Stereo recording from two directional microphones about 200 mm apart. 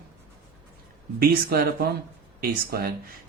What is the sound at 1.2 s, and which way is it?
Speech, 50° right (ahead or behind).